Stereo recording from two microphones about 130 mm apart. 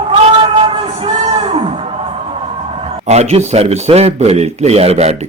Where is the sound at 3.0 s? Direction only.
55° right (ahead or behind).